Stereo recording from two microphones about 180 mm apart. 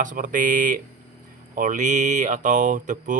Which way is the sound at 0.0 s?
45° right (ahead or behind).